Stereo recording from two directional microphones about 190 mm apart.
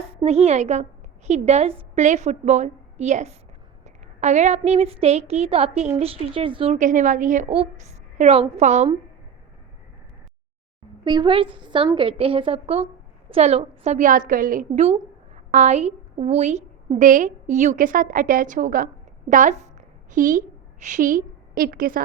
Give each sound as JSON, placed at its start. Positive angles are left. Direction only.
{"t": 0.0, "sound": "a woman's voice", "side_deg": -35}
{"t": 11.0, "sound": "a woman's voice", "side_deg": -20}